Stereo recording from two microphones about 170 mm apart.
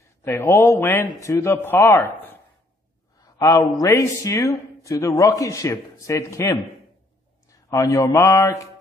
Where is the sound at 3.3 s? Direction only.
20° left (ahead or behind).